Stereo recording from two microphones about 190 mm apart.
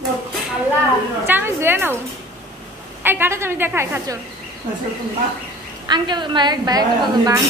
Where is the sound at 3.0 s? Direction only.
10° right (ahead or behind).